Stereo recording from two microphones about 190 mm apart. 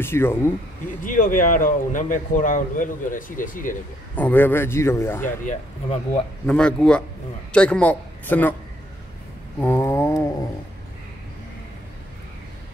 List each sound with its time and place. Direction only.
0.0 s a man's voice: 10° left (ahead or behind)
1.0 s a man's voice: 45° left (ahead or behind)
4.1 s a man's voice: 10° left (ahead or behind)
5.4 s speech: 40° left (ahead or behind)
6.4 s a man's voice: 5° left (ahead or behind)
9.6 s a man's voice: 15° left (ahead or behind)